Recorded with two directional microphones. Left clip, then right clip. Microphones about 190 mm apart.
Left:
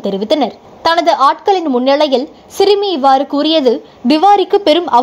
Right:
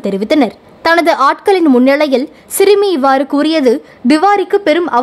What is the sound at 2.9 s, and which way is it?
A woman's voice, 20° right (ahead or behind).